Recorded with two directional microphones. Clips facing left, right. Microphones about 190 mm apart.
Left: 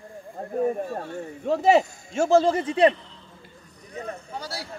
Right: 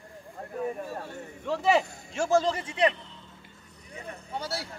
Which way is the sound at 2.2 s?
25° left (ahead or behind).